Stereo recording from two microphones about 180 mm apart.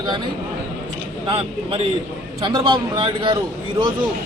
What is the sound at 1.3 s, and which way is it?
A man's voice, 30° right (ahead or behind).